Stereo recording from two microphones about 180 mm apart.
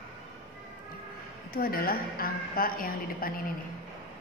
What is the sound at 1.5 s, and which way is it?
A woman's voice, 55° left (ahead or behind).